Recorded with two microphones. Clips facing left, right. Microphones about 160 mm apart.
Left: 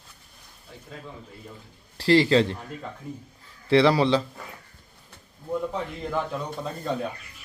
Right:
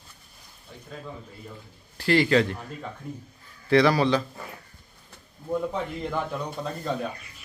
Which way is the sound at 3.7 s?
25° left (ahead or behind).